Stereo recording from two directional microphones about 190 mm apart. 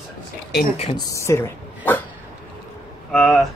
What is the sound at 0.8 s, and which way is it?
Speech, 30° left (ahead or behind).